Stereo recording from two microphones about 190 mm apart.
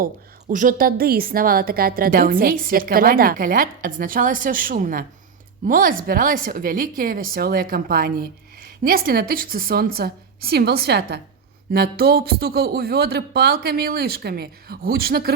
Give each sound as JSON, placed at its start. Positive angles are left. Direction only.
{"t": 0.0, "sound": "speech", "side_deg": -45}